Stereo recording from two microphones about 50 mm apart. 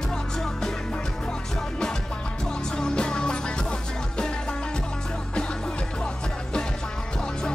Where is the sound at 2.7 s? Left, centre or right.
Centre.